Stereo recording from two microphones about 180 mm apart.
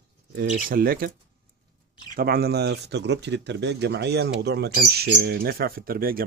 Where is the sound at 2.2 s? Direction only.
60° right (ahead or behind).